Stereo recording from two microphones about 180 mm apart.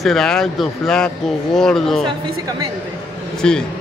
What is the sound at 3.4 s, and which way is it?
Speech, 5° left (ahead or behind).